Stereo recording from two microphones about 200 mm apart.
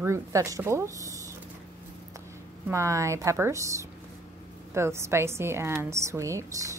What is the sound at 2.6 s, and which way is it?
A woman's voice, 15° right (ahead or behind).